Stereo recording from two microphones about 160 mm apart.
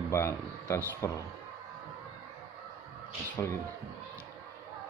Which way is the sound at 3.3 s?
15° left (ahead or behind).